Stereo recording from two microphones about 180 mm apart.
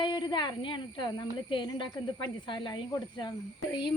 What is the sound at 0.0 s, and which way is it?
Speech, 25° left (ahead or behind).